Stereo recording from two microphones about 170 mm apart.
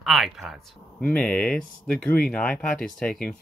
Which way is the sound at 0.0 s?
Centre (ahead or behind).